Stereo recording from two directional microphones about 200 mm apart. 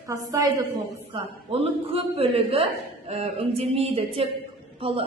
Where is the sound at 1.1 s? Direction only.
30° right (ahead or behind).